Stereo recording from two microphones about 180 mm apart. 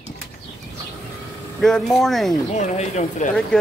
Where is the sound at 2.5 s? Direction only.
40° left (ahead or behind).